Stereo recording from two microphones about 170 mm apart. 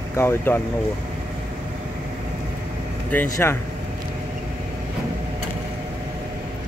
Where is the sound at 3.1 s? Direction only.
10° left (ahead or behind).